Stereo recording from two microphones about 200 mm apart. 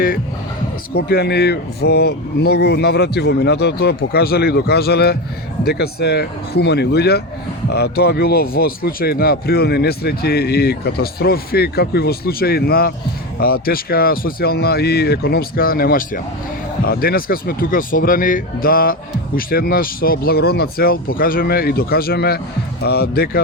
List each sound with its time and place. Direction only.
0.9 s speech: 50° left (ahead or behind)